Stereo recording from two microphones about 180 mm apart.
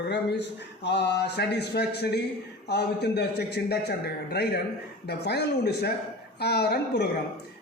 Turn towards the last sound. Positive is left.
turn(degrees=65)  # may be behind; listen again after turning